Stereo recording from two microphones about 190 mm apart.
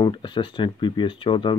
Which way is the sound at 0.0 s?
25° left (ahead or behind).